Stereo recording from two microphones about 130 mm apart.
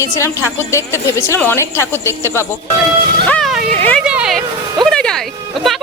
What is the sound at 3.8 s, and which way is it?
Speech, 15° left (ahead or behind).